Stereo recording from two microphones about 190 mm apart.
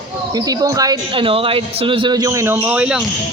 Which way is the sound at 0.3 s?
20° right (ahead or behind).